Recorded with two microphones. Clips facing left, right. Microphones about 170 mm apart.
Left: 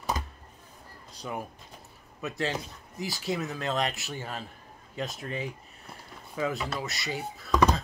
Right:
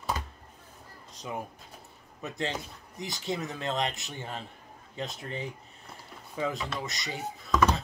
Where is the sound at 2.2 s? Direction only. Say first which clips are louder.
Left 2 dB; 20° right (ahead or behind).